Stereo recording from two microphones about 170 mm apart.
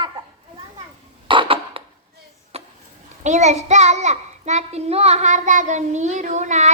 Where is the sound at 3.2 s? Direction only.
45° right (ahead or behind).